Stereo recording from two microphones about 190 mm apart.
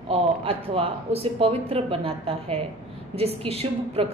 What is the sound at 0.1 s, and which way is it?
Speech, 30° right (ahead or behind).